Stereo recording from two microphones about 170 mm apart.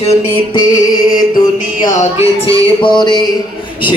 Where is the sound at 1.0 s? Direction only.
25° left (ahead or behind).